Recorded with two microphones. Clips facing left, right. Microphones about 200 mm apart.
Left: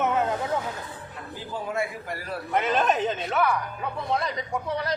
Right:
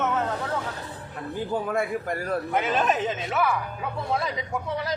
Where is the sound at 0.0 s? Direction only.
15° left (ahead or behind).